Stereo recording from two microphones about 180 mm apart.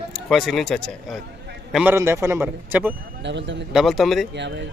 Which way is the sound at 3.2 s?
80° right.